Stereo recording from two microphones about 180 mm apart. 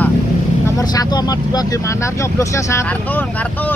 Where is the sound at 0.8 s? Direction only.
20° left (ahead or behind).